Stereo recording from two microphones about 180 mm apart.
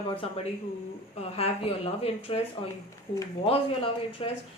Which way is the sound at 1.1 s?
35° left (ahead or behind).